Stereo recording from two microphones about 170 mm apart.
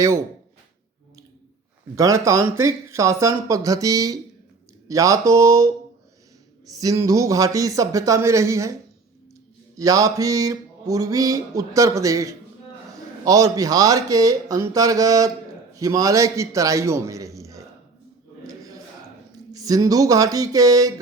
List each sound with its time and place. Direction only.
2.0 s speech: 20° right (ahead or behind)
4.9 s mantra: 20° right (ahead or behind)
9.7 s mantra: 20° right (ahead or behind)
18.4 s a sound: 20° right (ahead or behind)
19.5 s mantra: 20° right (ahead or behind)